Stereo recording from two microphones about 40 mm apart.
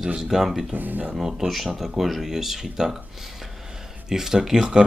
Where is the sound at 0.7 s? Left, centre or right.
Right.